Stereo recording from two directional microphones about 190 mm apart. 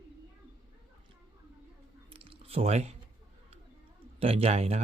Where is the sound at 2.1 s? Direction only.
30° right (ahead or behind).